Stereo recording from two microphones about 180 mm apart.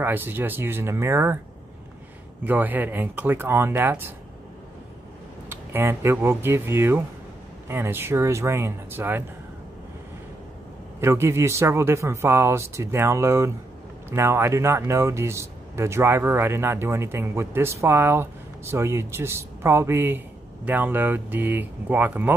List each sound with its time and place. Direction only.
0.0 s speech: 10° right (ahead or behind)
2.4 s speech: 10° right (ahead or behind)
5.5 s speech: 10° right (ahead or behind)
11.0 s speech: 15° right (ahead or behind)